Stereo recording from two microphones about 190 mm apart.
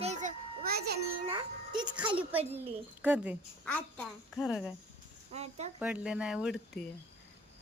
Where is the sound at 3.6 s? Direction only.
5° left (ahead or behind).